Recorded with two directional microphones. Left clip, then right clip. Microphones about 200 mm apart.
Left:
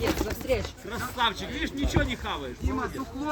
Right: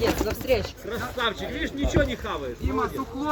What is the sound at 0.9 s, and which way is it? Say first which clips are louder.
Speech: left 1 dB; 45° left (ahead or behind).